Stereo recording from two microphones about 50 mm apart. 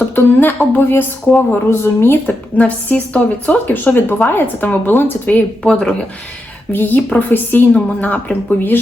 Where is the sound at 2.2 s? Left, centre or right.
Left.